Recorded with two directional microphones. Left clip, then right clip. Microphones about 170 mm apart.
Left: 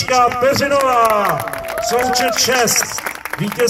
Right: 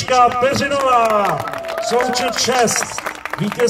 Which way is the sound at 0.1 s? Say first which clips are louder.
Even; 20° left (ahead or behind).